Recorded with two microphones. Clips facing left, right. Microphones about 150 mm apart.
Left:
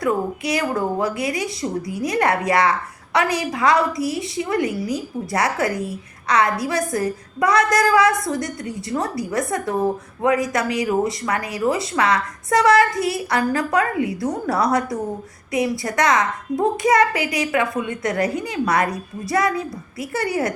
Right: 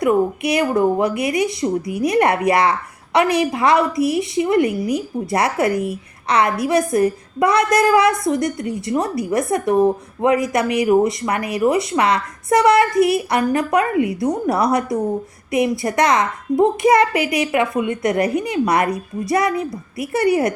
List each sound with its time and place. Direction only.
0.0 s a woman's voice: 20° right (ahead or behind)